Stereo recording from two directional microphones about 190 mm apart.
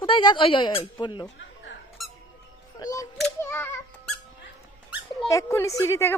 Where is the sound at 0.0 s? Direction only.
25° left (ahead or behind).